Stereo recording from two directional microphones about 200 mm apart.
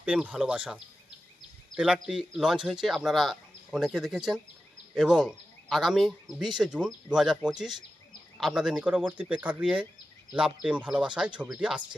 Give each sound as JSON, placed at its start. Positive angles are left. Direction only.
{"t": 0.0, "sound": "speech", "side_deg": -5}